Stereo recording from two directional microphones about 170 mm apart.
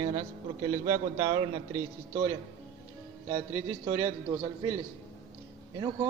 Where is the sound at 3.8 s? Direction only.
20° right (ahead or behind).